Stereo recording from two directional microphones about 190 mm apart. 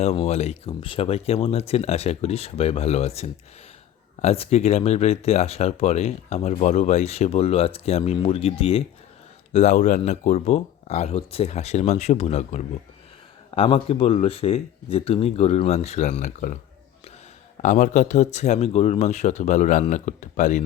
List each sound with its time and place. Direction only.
0.0 s speech: 35° left (ahead or behind)
17.6 s speech: 40° left (ahead or behind)